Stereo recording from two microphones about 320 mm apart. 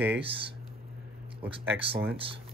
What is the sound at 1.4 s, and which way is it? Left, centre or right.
Speech, centre.